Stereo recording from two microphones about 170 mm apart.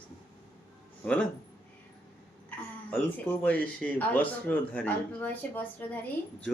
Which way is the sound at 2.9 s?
10° left (ahead or behind).